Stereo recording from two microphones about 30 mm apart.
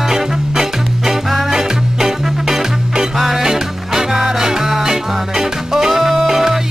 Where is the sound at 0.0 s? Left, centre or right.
Centre.